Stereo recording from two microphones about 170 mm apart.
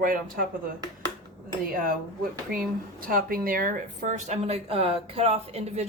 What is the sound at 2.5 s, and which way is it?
Speech, 55° right (ahead or behind).